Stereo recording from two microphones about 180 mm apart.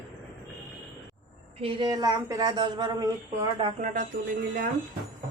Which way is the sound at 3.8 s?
45° right (ahead or behind).